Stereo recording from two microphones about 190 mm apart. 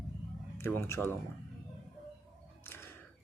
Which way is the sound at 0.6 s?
15° left (ahead or behind).